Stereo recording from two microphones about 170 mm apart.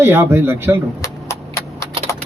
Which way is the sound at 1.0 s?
15° left (ahead or behind).